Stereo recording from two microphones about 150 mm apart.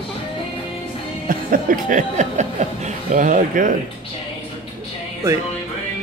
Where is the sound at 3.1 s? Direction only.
60° right (ahead or behind).